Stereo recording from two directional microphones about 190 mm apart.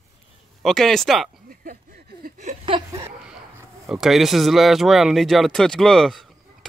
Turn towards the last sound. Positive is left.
turn(degrees=0)  # may be behind; listen again after turning